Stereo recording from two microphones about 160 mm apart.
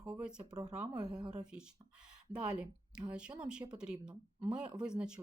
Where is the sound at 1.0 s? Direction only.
25° right (ahead or behind).